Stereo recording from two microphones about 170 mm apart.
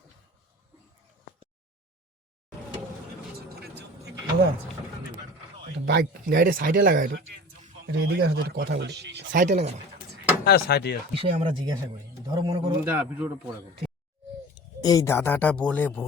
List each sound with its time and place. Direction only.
3.3 s vehicle: 70° right (ahead or behind)
5.8 s speech: 70° right (ahead or behind)
7.9 s speech: 80° right
9.3 s speech: 50° right (ahead or behind)
10.4 s speech: 70° left (ahead or behind)
11.1 s speech: 35° right (ahead or behind)
12.9 s speech: 10° right (ahead or behind)
14.5 s speech: 20° left (ahead or behind)